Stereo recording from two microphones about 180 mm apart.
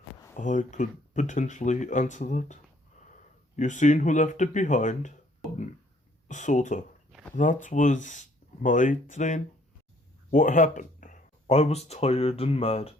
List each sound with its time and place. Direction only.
0.3 s speech: 45° left (ahead or behind)
6.2 s speech: 40° left (ahead or behind)